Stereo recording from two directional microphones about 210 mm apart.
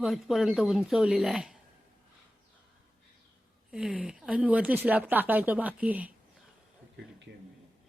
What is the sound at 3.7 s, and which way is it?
Speech, 5° right (ahead or behind).